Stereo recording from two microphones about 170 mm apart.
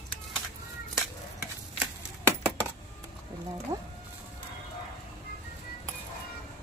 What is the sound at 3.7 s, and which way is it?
Speech, 20° right (ahead or behind).